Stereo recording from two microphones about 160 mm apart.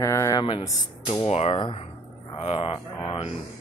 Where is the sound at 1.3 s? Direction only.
40° left (ahead or behind).